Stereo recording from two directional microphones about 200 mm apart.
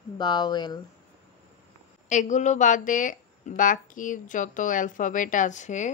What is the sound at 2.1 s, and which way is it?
Speech, 35° left (ahead or behind).